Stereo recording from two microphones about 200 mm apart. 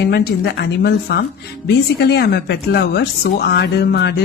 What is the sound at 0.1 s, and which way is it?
A woman's voice, 55° left (ahead or behind).